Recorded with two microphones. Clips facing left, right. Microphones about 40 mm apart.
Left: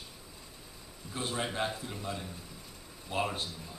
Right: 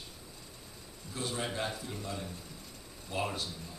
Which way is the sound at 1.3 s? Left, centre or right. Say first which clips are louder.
Left 3 dB; centre.